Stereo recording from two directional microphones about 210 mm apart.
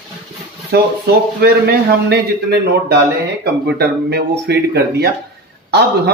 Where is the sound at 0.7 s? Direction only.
50° right (ahead or behind).